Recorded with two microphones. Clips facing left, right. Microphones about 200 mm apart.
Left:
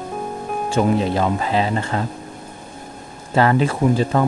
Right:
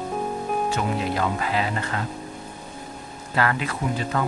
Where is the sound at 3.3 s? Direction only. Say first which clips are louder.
Left 8 dB; 30° left (ahead or behind).